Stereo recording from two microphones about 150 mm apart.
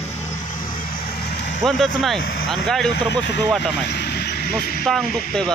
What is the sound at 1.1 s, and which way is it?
Vehicle, 90° left.